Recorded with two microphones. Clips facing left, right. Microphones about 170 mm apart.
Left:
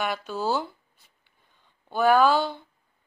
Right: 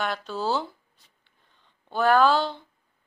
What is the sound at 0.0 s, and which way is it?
Speech, 5° left (ahead or behind).